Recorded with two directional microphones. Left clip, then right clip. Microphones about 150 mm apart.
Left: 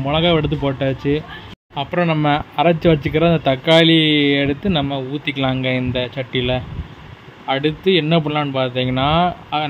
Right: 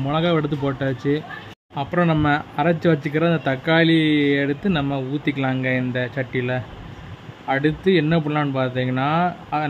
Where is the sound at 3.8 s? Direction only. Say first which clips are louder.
Left 4 dB; 35° right (ahead or behind).